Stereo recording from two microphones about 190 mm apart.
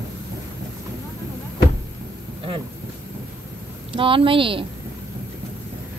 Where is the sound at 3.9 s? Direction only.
30° right (ahead or behind).